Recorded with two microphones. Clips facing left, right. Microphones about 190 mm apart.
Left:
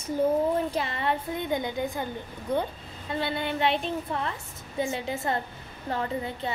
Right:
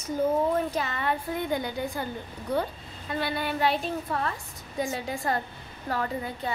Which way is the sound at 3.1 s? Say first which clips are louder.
Even; 25° left (ahead or behind).